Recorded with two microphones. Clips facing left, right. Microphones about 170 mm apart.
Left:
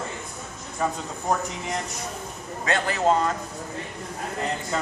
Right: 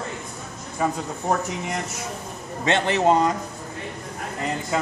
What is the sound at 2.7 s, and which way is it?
Speech, 25° right (ahead or behind).